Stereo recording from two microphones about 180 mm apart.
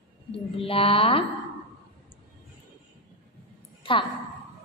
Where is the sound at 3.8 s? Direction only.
30° left (ahead or behind).